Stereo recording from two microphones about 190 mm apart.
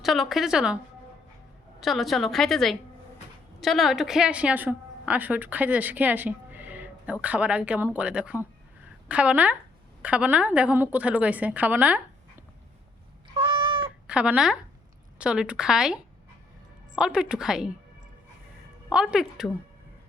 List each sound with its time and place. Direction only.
0.0 s a woman's voice: centre (ahead or behind)
1.8 s a woman's voice: centre (ahead or behind)
13.3 s cat: 25° right (ahead or behind)
14.1 s a woman's voice: 5° right (ahead or behind)
18.9 s a woman's voice: 5° right (ahead or behind)